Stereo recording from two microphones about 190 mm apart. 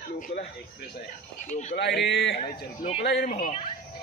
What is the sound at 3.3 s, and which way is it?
Speech, 35° left (ahead or behind).